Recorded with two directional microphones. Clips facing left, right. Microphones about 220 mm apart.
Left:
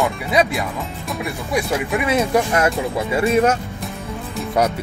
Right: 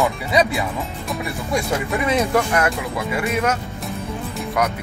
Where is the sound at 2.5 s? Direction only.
25° left (ahead or behind).